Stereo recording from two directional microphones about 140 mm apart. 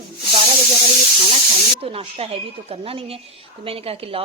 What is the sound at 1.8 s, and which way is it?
Speech, 45° right (ahead or behind).